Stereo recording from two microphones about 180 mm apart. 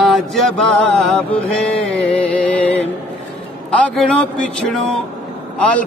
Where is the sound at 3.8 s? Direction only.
5° left (ahead or behind).